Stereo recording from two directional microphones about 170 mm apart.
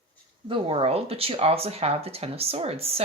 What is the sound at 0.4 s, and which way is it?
Speech, 30° right (ahead or behind).